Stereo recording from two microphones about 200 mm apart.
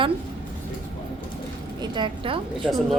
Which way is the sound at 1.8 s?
25° right (ahead or behind).